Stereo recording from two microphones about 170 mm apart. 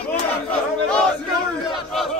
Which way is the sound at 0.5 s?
5° left (ahead or behind).